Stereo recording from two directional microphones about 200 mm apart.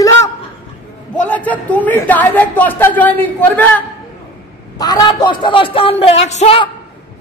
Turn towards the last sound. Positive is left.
turn(degrees=30)  # may be behind; listen again after turning